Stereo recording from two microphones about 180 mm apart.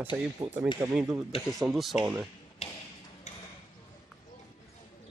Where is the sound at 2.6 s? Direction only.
35° left (ahead or behind).